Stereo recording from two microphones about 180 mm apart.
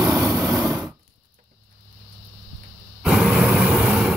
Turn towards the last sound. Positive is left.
turn(degrees=-5)  # may be behind; listen again after turning